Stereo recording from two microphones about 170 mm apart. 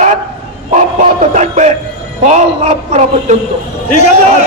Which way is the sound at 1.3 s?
45° right (ahead or behind).